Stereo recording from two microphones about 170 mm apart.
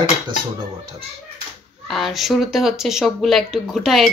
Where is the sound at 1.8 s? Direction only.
Centre (ahead or behind).